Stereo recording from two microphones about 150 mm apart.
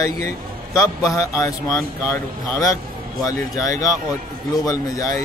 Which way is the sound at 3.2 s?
25° left (ahead or behind).